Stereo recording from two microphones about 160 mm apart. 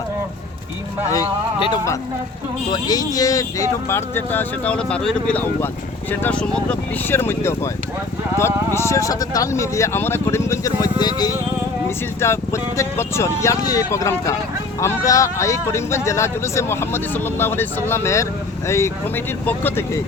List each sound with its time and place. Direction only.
1.1 s speech: 30° left (ahead or behind); by 20.0 s 15° left (ahead or behind)